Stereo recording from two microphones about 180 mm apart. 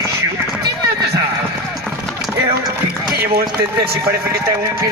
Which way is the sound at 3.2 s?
60° right (ahead or behind).